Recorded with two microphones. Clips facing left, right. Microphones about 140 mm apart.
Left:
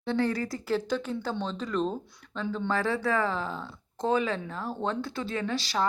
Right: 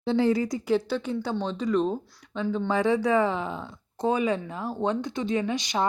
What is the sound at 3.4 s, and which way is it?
Speech, 10° right (ahead or behind).